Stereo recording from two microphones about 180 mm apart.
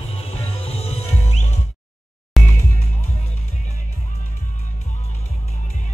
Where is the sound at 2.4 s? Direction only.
Centre (ahead or behind).